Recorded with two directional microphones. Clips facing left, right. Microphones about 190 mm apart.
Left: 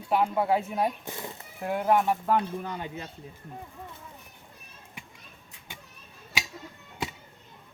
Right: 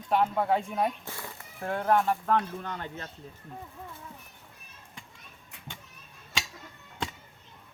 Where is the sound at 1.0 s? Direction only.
20° left (ahead or behind).